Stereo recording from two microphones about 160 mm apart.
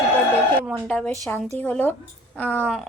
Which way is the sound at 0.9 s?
5° left (ahead or behind).